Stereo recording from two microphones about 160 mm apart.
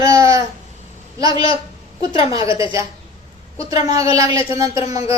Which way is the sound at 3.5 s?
20° right (ahead or behind).